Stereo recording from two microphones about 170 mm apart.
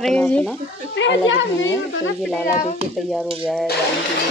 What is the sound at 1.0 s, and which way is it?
Speech, 90° left.